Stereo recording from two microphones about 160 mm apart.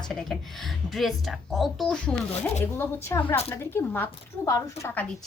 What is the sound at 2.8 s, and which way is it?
Speech, 15° left (ahead or behind).